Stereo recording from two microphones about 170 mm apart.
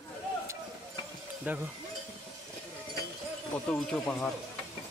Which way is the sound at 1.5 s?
10° right (ahead or behind).